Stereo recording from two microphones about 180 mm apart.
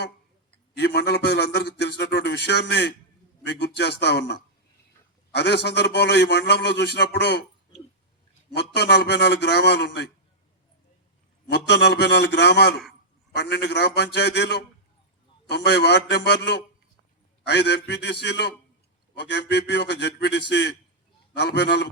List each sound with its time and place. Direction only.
0.8 s a man's voice: 70° left (ahead or behind)
8.5 s a man's voice: 65° left (ahead or behind)
11.5 s a man's voice: 70° left (ahead or behind)